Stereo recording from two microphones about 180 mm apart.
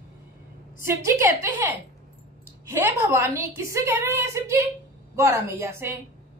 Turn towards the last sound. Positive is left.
turn(degrees=-15)  # may be behind; listen again after turning